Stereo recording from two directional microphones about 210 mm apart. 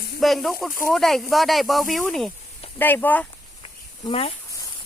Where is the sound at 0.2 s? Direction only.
Centre (ahead or behind).